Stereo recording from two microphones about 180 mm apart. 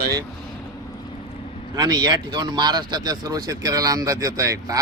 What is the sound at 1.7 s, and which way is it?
Speech, 20° right (ahead or behind).